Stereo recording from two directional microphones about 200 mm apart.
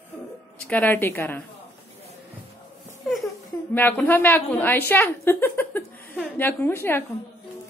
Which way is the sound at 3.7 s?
10° left (ahead or behind).